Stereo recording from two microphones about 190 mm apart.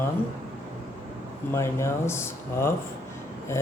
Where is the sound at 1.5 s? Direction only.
15° left (ahead or behind).